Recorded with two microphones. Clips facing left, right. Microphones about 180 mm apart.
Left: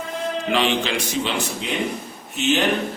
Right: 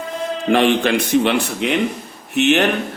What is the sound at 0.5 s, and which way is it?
A man's voice, 55° right (ahead or behind).